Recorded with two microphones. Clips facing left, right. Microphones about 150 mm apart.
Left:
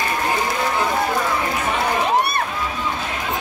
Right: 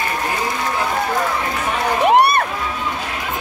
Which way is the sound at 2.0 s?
65° right (ahead or behind).